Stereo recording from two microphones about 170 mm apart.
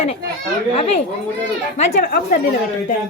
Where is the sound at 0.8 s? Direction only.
35° left (ahead or behind).